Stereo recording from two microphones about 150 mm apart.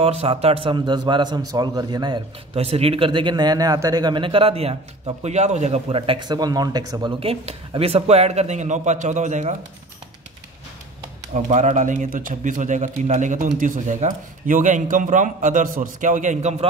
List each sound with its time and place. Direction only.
0.0 s speech: 40° right (ahead or behind)
2.5 s speech: 40° right (ahead or behind)
11.3 s speech: 50° right (ahead or behind)